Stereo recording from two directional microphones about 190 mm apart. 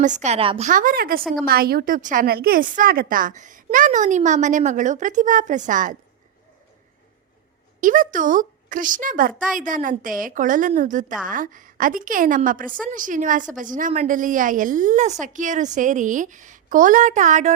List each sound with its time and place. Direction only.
0.2 s a woman's voice: 35° right (ahead or behind)
0.7 s a woman's voice: 45° right (ahead or behind)
1.2 s a woman's voice: centre (ahead or behind)
1.5 s a woman's voice: 55° right (ahead or behind)
7.8 s a woman's voice: 45° right (ahead or behind)